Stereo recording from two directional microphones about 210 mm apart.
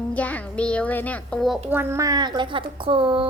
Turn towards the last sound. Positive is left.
turn(degrees=-25)  # may be behind; listen again after turning